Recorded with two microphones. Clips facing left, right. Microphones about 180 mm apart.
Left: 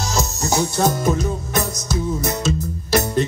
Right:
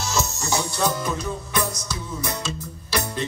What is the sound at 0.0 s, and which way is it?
Music, 35° left (ahead or behind).